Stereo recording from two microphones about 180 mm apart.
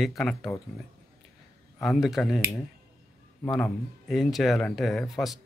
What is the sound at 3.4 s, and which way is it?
Speech, 5° left (ahead or behind).